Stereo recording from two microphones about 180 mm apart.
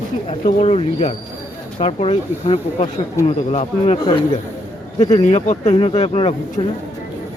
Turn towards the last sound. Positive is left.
turn(degrees=35)  # may be behind; listen again after turning